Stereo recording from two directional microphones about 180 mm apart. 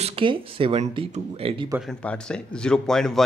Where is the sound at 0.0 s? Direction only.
30° right (ahead or behind).